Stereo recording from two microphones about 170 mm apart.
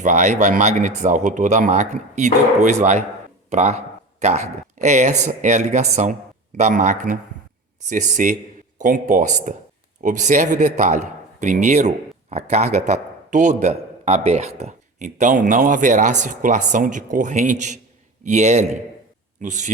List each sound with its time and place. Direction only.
0.0 s speech: 45° right (ahead or behind)